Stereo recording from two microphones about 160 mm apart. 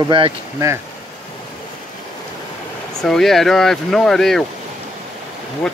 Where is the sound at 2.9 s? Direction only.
5° left (ahead or behind).